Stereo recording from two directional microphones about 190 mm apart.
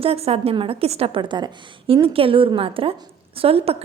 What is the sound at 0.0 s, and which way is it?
A woman's voice, 30° right (ahead or behind).